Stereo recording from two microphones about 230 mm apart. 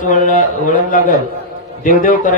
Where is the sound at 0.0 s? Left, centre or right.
Left.